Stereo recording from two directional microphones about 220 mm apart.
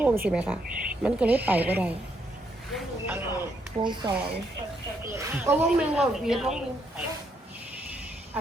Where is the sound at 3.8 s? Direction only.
20° right (ahead or behind); by 6.6 s centre (ahead or behind).